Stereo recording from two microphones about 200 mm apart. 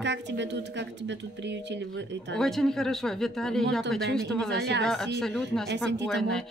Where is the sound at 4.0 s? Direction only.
55° right (ahead or behind).